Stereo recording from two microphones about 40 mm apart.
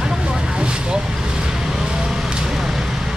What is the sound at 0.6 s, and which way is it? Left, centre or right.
Vehicle, right.